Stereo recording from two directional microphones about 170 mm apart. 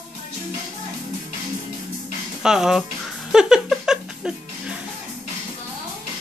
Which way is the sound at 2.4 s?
5° right (ahead or behind).